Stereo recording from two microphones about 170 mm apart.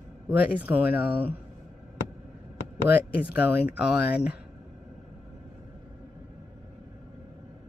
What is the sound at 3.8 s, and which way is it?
Speech, 70° left (ahead or behind).